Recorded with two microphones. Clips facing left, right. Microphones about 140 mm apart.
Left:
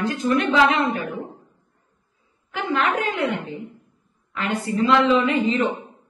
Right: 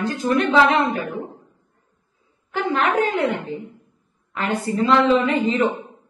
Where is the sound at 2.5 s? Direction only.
40° right (ahead or behind).